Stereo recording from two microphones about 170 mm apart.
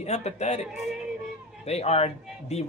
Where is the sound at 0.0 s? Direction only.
40° left (ahead or behind).